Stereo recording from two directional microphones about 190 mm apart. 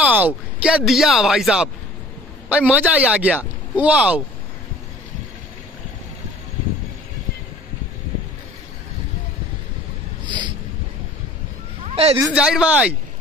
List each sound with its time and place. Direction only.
0.0 s speech: 10° right (ahead or behind)
2.7 s speech: 10° right (ahead or behind)
10.2 s a sound: 25° right (ahead or behind)
11.9 s speech: 30° right (ahead or behind)
12.2 s speech: 5° right (ahead or behind)